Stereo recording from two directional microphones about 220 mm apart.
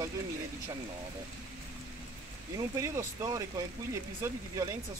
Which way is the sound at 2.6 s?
15° right (ahead or behind).